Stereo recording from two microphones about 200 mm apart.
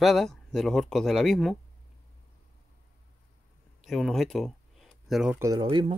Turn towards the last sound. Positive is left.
turn(degrees=-25)  # may be behind; listen again after turning